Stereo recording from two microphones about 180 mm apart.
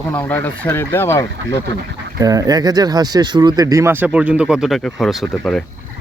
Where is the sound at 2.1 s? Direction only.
20° right (ahead or behind).